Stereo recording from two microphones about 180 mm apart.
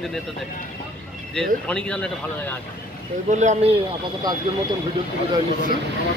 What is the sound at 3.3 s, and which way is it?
Speech, 40° right (ahead or behind).